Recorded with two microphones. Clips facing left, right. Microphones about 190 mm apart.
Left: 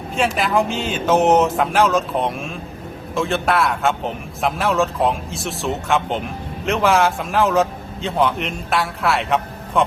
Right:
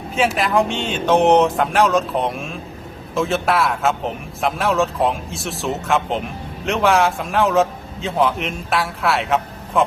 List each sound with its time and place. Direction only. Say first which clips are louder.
0.1 s a man's voice: right 1 dB; centre (ahead or behind)